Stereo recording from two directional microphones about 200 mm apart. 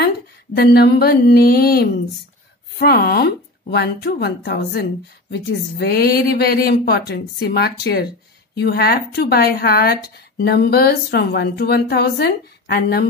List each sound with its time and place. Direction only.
0.6 s speech: 55° left (ahead or behind)